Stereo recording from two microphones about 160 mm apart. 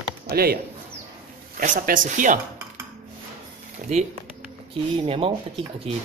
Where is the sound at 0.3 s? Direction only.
75° right (ahead or behind).